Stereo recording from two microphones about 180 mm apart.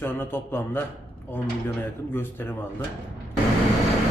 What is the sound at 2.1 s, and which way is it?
Speech, 10° left (ahead or behind).